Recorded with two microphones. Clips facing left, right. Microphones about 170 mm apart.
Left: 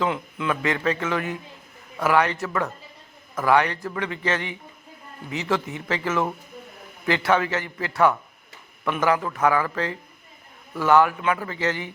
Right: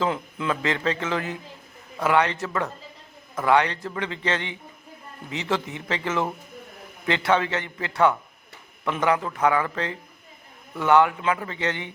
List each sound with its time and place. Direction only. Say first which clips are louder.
0.0 s a man's voice: even; 30° right (ahead or behind)
7.3 s a man's voice: even; 25° right (ahead or behind)